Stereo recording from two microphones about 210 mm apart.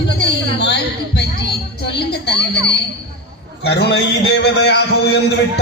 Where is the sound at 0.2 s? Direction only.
50° left (ahead or behind).